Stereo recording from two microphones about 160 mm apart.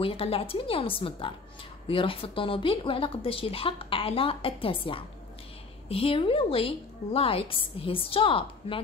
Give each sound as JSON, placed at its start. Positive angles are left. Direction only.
{"t": 0.0, "sound": "a woman's voice", "side_deg": 35}